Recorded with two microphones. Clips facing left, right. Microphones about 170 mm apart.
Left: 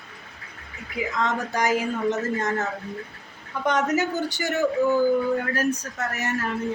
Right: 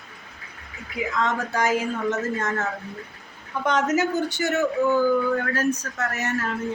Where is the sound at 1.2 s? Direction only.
15° left (ahead or behind).